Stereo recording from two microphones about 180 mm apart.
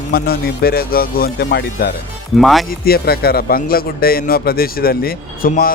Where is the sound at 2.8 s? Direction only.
60° left (ahead or behind).